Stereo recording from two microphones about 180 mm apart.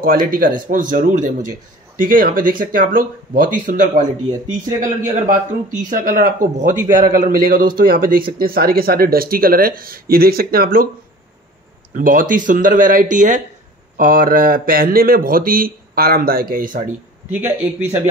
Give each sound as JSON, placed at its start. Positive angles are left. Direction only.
{"t": 0.0, "sound": "a man's voice", "side_deg": -50}
{"t": 11.9, "sound": "a man's voice", "side_deg": -50}
{"t": 17.3, "sound": "a man's voice", "side_deg": -10}